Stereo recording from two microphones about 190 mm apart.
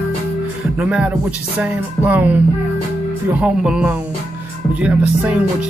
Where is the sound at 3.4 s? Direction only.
5° right (ahead or behind).